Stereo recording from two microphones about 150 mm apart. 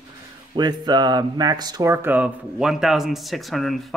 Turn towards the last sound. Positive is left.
turn(degrees=0)  # may be behind; listen again after turning